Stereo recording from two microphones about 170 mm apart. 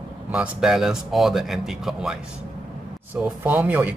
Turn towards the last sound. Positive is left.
turn(degrees=-10)  # may be behind; listen again after turning